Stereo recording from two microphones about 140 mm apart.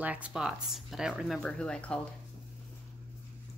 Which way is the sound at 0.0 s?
10° right (ahead or behind).